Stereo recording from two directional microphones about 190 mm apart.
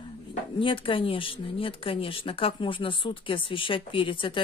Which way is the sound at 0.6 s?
25° left (ahead or behind).